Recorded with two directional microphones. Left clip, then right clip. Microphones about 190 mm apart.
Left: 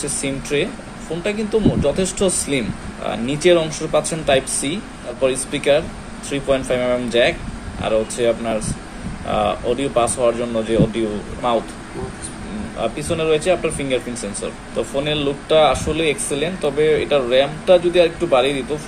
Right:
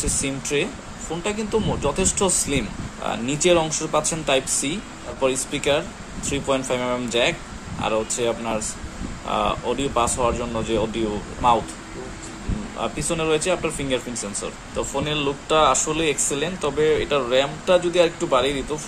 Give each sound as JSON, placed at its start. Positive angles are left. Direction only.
{"t": 0.0, "sound": "speech", "side_deg": -30}
{"t": 12.8, "sound": "speech", "side_deg": -35}